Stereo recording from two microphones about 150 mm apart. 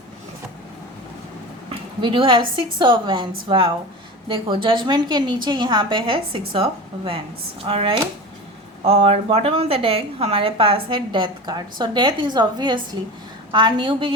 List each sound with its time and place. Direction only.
1.7 s a woman's voice: 35° right (ahead or behind)